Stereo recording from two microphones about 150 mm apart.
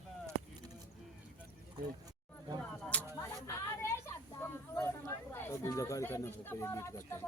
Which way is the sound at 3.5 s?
20° left (ahead or behind).